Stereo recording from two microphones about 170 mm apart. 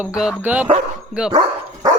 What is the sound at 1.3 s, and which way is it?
Dog, 35° right (ahead or behind).